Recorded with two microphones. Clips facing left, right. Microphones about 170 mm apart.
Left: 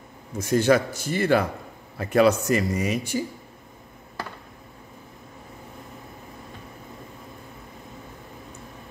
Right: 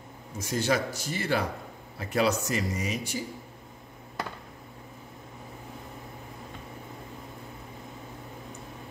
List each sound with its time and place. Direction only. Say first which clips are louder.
0.4 s speech: left 8 dB; 55° left (ahead or behind)